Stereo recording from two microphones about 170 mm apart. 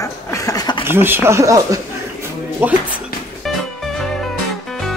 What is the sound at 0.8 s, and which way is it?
Speech, 15° right (ahead or behind).